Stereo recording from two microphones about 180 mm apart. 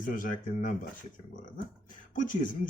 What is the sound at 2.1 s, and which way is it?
Speech, 45° left (ahead or behind).